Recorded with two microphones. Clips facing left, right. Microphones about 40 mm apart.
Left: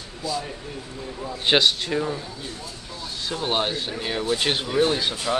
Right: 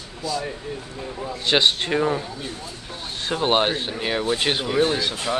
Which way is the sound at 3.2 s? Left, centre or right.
Right.